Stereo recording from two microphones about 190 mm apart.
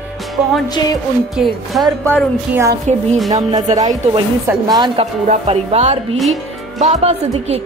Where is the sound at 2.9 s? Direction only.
35° right (ahead or behind).